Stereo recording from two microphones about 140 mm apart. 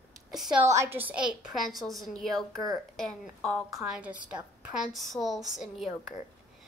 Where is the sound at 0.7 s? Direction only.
20° right (ahead or behind); by 6.1 s centre (ahead or behind).